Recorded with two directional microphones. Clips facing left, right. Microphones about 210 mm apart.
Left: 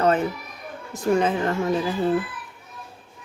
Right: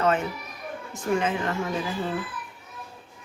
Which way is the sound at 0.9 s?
35° left (ahead or behind).